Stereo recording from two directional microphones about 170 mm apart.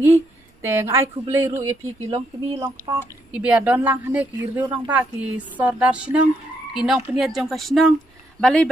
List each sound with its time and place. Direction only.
0.0 s speech: 15° right (ahead or behind)
3.3 s speech: 5° right (ahead or behind)
6.7 s frog: centre (ahead or behind)